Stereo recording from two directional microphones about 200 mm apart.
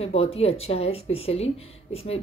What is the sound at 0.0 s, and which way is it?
Speech, 30° left (ahead or behind).